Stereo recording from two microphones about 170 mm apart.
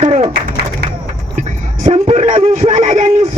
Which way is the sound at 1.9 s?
45° right (ahead or behind).